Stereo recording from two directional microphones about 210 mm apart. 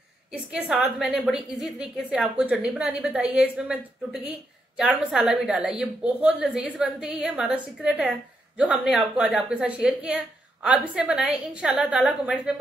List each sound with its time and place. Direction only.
0.3 s a woman's voice: 5° right (ahead or behind)